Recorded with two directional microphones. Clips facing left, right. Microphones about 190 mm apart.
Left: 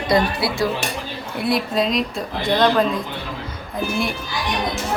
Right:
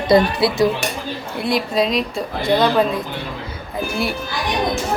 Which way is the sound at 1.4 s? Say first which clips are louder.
Right 1 dB; centre (ahead or behind).